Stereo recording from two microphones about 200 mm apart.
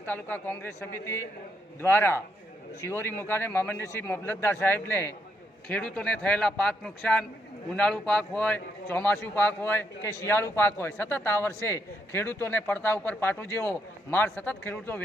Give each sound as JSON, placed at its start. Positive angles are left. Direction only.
{"t": 0.0, "sound": "a man's voice", "side_deg": 10}